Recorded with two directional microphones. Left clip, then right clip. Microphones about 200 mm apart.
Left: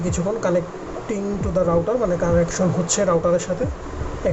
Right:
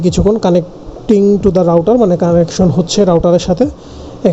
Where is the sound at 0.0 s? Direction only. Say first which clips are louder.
Right 10 dB; 35° right (ahead or behind).